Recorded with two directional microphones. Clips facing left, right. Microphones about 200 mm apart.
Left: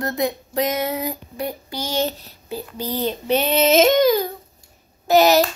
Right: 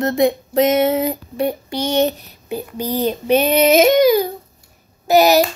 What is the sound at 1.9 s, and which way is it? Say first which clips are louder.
Child singing: right 6 dB; 20° right (ahead or behind).